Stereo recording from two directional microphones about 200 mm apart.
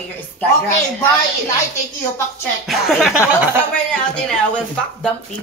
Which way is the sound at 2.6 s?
Centre (ahead or behind).